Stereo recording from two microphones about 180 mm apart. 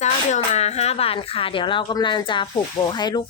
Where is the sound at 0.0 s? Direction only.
40° left (ahead or behind).